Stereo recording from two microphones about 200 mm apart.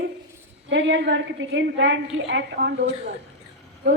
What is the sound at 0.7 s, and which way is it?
A woman's voice, 65° right (ahead or behind).